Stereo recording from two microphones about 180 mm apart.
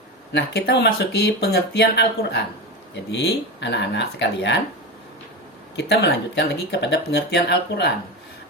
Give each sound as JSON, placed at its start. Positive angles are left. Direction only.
{"t": 0.3, "sound": "speech", "side_deg": 65}
{"t": 5.7, "sound": "speech", "side_deg": 70}